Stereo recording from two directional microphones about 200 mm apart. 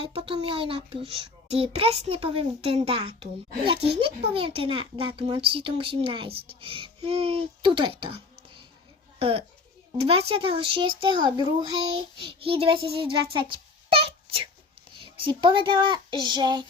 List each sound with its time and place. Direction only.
0.0 s a child's voice: 30° right (ahead or behind)
13.0 s a sound: 25° right (ahead or behind)
14.9 s a child's voice: 25° right (ahead or behind)